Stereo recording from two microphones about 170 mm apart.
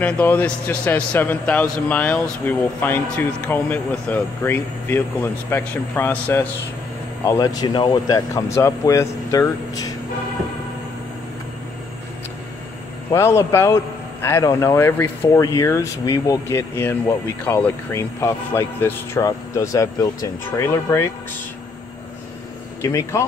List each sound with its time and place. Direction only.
0.0 s speech: 10° left (ahead or behind)
7.2 s speech: 25° left (ahead or behind)
13.1 s speech: 15° left (ahead or behind)
22.8 s speech: 15° left (ahead or behind)